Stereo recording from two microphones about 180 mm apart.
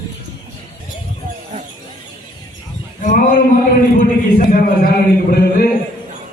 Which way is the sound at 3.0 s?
45° left (ahead or behind).